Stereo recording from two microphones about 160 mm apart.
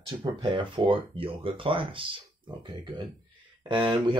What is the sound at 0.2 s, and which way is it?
Speech, 30° right (ahead or behind).